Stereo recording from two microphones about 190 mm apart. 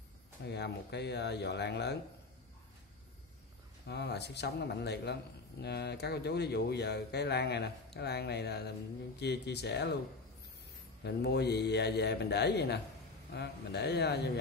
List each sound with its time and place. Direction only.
0.5 s speech: 60° left (ahead or behind)
3.8 s speech: 60° left (ahead or behind)
11.1 s speech: 60° left (ahead or behind)